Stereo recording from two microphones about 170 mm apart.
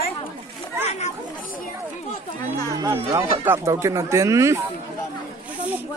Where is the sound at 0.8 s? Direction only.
40° left (ahead or behind).